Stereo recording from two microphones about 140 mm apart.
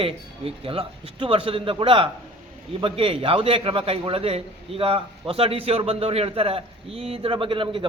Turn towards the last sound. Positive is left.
turn(degrees=-40)  # may be behind; listen again after turning